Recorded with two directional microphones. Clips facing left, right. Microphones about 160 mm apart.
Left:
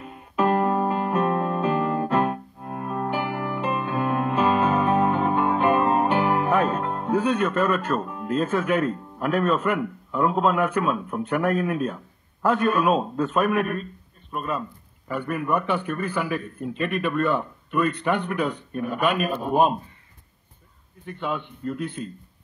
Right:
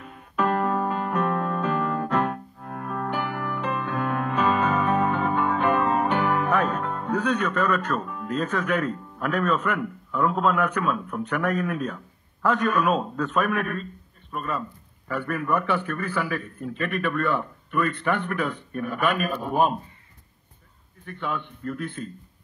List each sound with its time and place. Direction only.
0.0 s music: 20° left (ahead or behind)
7.2 s a man's voice: 10° left (ahead or behind)
7.5 s a man's voice: 25° left (ahead or behind)
21.0 s speech: 20° left (ahead or behind)